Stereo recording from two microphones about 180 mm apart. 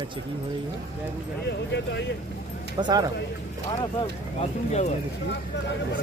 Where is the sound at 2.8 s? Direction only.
25° right (ahead or behind).